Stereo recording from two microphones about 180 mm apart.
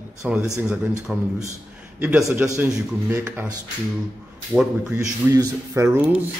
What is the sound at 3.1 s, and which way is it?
Speech, 10° right (ahead or behind).